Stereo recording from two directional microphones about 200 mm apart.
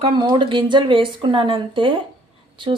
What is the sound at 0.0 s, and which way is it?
Speech, 25° right (ahead or behind).